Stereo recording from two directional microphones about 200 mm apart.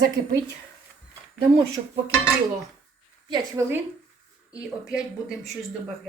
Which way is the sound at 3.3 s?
15° right (ahead or behind).